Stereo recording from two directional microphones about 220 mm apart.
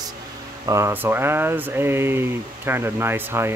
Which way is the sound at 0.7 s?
15° right (ahead or behind).